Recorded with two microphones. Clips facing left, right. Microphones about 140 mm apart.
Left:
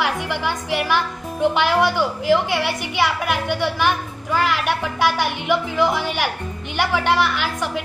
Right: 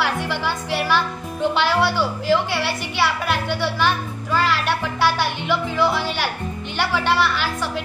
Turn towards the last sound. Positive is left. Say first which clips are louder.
# even
turn(degrees=15)  # may be behind; listen again after turning